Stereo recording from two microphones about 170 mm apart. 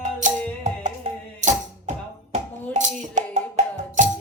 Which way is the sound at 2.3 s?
45° right (ahead or behind).